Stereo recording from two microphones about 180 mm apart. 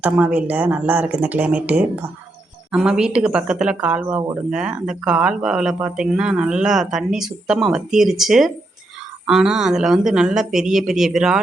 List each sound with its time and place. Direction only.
0.0 s speech: 5° right (ahead or behind)